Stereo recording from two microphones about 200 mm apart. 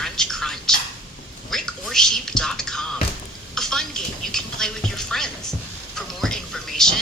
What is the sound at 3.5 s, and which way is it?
Music, centre (ahead or behind).